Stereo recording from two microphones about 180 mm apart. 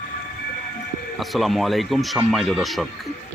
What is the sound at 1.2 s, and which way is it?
Speech, centre (ahead or behind).